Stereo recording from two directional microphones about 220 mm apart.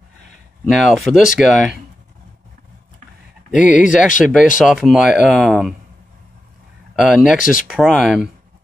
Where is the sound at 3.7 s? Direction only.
35° left (ahead or behind).